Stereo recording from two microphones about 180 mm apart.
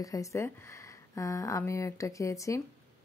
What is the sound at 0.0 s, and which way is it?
Speech, 20° left (ahead or behind).